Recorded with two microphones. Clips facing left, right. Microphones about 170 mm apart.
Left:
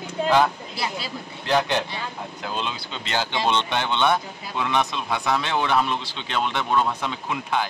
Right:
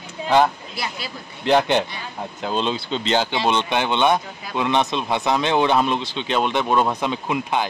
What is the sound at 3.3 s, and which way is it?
Speech, 10° right (ahead or behind).